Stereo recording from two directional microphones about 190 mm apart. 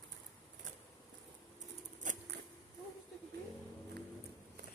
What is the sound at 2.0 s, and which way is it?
Scissors, 40° right (ahead or behind).